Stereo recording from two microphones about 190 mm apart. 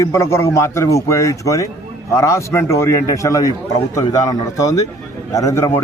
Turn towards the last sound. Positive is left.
turn(degrees=15)  # may be behind; listen again after turning